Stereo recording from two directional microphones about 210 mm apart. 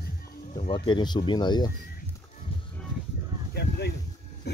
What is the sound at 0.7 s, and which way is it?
Speech, 25° left (ahead or behind).